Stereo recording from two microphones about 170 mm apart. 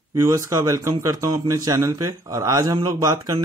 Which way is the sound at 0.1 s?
20° right (ahead or behind).